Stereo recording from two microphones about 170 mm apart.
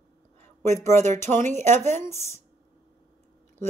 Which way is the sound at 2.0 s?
15° left (ahead or behind).